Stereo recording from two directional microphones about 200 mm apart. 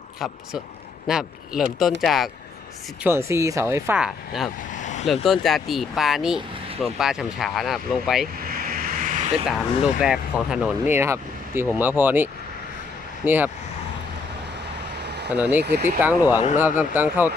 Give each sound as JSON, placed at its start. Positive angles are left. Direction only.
{"t": 1.0, "sound": "speech", "side_deg": 0}
{"t": 3.0, "sound": "speech", "side_deg": -10}
{"t": 4.8, "sound": "vehicle", "side_deg": 35}
{"t": 5.2, "sound": "speech", "side_deg": 0}
{"t": 8.4, "sound": "vehicle", "side_deg": -45}
{"t": 9.5, "sound": "speech", "side_deg": 0}
{"t": 14.9, "sound": "vehicle", "side_deg": -60}
{"t": 15.6, "sound": "speech", "side_deg": -55}
{"t": 16.0, "sound": "speech", "side_deg": -10}